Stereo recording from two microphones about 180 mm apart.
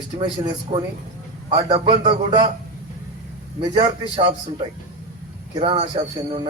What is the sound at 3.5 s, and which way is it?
A man's voice, 30° right (ahead or behind).